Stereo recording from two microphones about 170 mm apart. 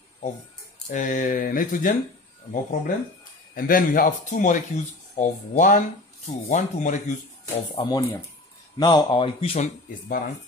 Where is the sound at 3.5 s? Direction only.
55° left (ahead or behind).